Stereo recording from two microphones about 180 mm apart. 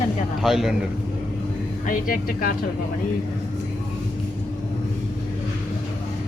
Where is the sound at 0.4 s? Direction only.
Centre (ahead or behind).